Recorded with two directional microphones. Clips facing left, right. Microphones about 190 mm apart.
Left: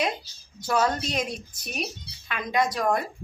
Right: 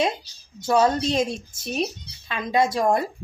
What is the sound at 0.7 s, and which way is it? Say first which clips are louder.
Speech: right 5 dB; 25° right (ahead or behind).